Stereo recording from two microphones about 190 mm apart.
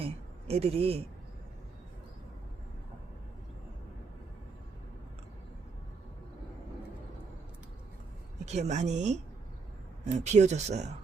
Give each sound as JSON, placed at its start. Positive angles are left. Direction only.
{"t": 0.0, "sound": "speech", "side_deg": -30}
{"t": 8.4, "sound": "speech", "side_deg": -35}